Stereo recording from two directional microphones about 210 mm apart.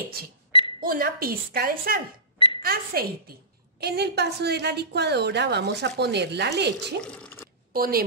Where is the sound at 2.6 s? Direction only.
45° right (ahead or behind).